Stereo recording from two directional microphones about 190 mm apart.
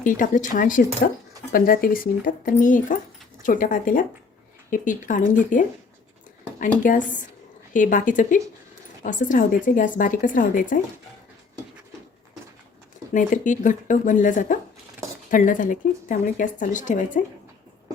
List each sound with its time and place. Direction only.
0.0 s speech: 45° left (ahead or behind)
13.1 s speech: 40° left (ahead or behind)